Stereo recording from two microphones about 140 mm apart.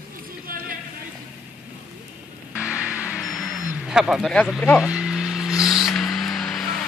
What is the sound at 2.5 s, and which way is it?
Vehicle, 5° right (ahead or behind).